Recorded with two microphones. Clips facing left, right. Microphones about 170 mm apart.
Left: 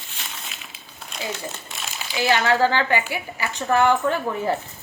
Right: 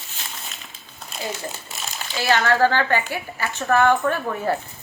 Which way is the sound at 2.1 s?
15° left (ahead or behind).